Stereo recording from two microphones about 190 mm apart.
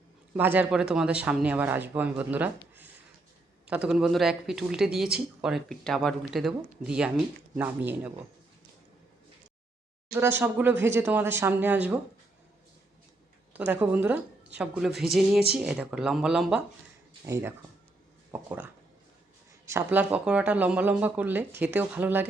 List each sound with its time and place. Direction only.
0.3 s speech: 10° right (ahead or behind)
10.1 s speech: 10° right (ahead or behind)
13.5 s speech: 10° right (ahead or behind)
17.2 s speech: 15° right (ahead or behind)